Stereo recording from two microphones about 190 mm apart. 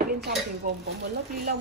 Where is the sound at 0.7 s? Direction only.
50° right (ahead or behind).